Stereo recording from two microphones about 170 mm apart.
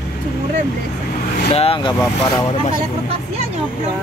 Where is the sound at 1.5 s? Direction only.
35° left (ahead or behind).